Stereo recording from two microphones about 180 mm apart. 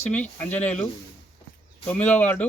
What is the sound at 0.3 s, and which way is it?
Speech, 10° left (ahead or behind).